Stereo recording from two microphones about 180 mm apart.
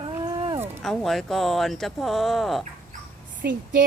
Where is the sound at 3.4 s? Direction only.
60° right (ahead or behind).